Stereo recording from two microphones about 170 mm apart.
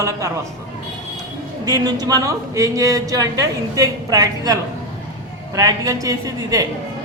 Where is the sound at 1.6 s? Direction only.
20° right (ahead or behind).